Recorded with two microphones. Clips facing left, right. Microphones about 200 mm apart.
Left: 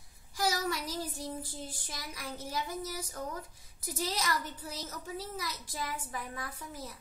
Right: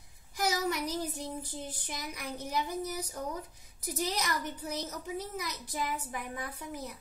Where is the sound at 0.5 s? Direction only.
20° right (ahead or behind).